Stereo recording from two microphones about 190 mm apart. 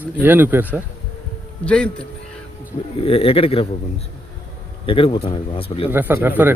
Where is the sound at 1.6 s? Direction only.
5° left (ahead or behind).